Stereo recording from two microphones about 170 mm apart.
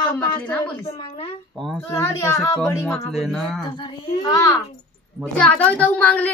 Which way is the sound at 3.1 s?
Centre (ahead or behind).